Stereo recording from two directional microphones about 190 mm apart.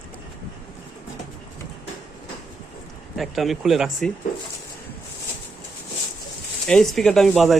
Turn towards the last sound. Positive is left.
turn(degrees=0)  # may be behind; listen again after turning